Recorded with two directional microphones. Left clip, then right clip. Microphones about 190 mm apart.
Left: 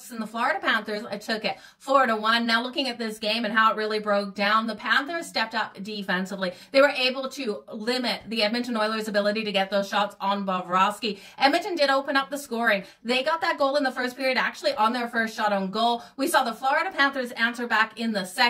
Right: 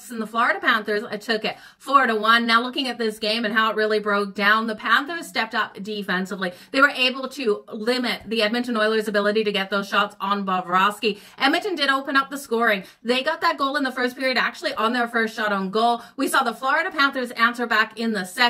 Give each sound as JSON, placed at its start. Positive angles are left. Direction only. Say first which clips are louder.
{"t": 0.4, "sound": "speech", "louder": "right 4 dB", "side_deg": 15}
{"t": 17.0, "sound": "a woman's voice", "louder": "right 4 dB", "side_deg": 20}